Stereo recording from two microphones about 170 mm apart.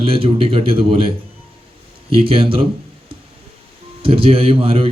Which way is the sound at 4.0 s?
35° right (ahead or behind).